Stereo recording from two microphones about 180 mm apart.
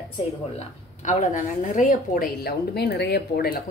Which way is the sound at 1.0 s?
45° left (ahead or behind).